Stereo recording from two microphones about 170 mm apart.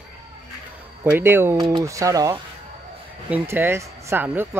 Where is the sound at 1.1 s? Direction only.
15° right (ahead or behind).